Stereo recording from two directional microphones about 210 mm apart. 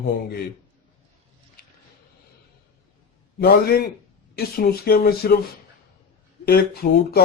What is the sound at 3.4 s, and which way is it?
Speech, 45° left (ahead or behind).